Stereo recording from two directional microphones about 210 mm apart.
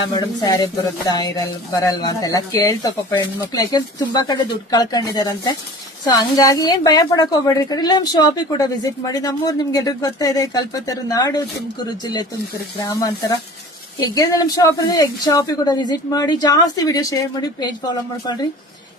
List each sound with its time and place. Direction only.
0.2 s a woman's voice: 20° left (ahead or behind)
14.0 s a woman's voice: 15° left (ahead or behind)